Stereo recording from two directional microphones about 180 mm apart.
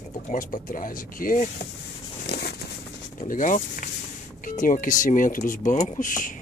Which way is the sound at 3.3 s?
45° left (ahead or behind).